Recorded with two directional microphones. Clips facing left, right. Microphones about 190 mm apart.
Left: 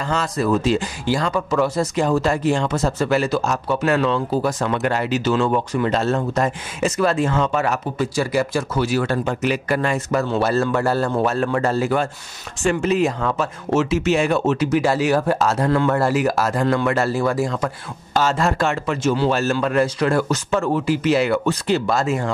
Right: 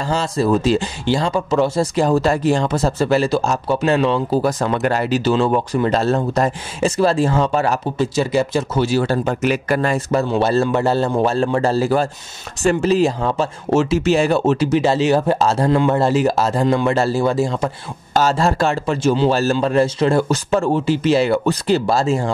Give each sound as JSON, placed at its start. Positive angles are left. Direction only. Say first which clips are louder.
{"t": 0.0, "sound": "speech", "louder": "right 3 dB", "side_deg": -30}